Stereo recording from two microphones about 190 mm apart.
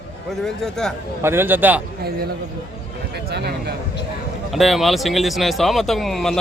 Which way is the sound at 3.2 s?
60° right (ahead or behind).